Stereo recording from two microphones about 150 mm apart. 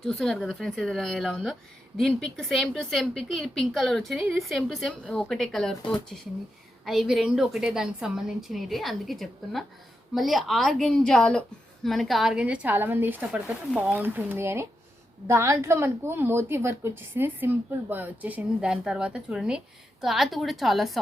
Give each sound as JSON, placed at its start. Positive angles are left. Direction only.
{"t": 0.0, "sound": "a woman's voice", "side_deg": 5}